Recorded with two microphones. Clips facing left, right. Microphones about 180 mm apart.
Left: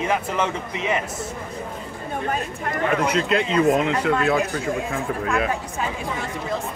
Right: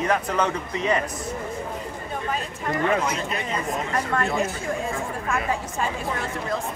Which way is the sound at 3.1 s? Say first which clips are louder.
Left 7 dB; 85° left.